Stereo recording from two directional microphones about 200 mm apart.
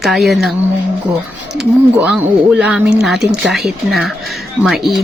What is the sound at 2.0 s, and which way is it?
Speech, 5° right (ahead or behind).